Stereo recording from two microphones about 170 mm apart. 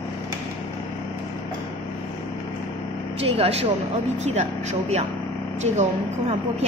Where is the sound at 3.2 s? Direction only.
35° right (ahead or behind).